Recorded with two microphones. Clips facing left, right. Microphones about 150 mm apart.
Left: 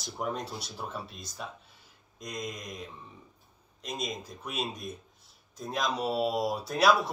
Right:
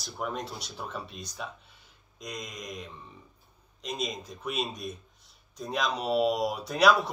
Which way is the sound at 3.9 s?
10° left (ahead or behind).